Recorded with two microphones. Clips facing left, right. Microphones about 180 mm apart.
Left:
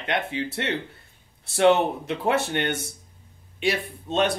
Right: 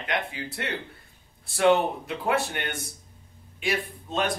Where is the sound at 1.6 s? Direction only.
25° left (ahead or behind).